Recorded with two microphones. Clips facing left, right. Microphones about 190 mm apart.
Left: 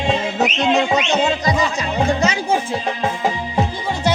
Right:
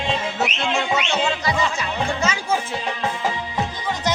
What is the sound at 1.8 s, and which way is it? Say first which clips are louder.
Music: left 5 dB; 35° left (ahead or behind).